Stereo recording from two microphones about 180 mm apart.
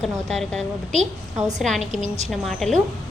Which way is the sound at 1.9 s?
40° right (ahead or behind).